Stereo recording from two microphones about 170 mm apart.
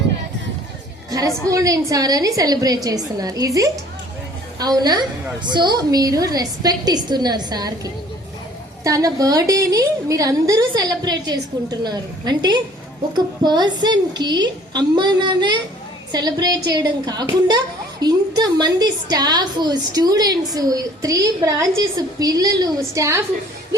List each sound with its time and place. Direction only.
1.1 s a woman's voice: 20° right (ahead or behind)
8.8 s a woman's voice: 20° right (ahead or behind)